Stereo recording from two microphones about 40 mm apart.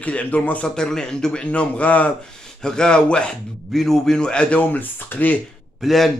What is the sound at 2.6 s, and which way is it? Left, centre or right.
Speech, centre.